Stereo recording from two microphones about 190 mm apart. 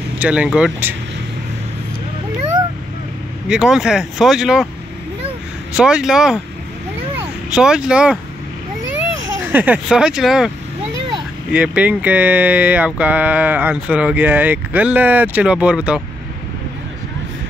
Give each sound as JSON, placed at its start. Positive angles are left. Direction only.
{"t": 0.2, "sound": "speech", "side_deg": -5}
{"t": 3.4, "sound": "speech", "side_deg": -5}
{"t": 5.8, "sound": "speech", "side_deg": -5}
{"t": 7.4, "sound": "speech", "side_deg": -5}
{"t": 9.5, "sound": "speech", "side_deg": -10}
{"t": 11.5, "sound": "speech", "side_deg": -5}